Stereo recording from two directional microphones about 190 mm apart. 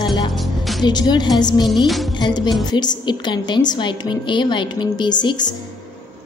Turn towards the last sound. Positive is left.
turn(degrees=25)  # may be behind; listen again after turning